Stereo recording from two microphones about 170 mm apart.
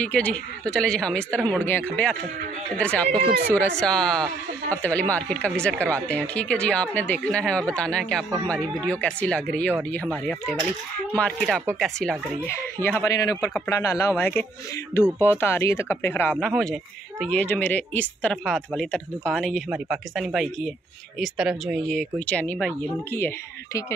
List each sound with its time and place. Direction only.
0.0 s speech: 5° left (ahead or behind)
12.8 s speech: 15° left (ahead or behind)
16.3 s speech: 5° left (ahead or behind)